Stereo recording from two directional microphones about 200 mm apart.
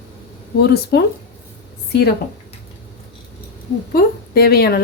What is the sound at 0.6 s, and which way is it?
Speech, 55° left (ahead or behind).